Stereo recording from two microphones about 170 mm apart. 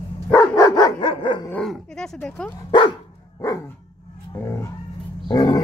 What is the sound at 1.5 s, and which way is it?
Dog, 5° left (ahead or behind).